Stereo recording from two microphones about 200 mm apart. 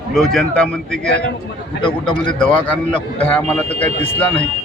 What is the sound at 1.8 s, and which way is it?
Speech, 25° left (ahead or behind).